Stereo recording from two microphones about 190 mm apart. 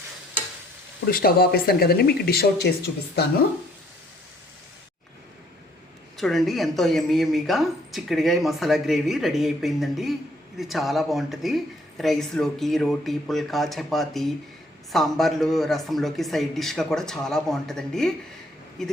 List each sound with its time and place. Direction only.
1.0 s speech: 50° left (ahead or behind)
6.1 s speech: centre (ahead or behind)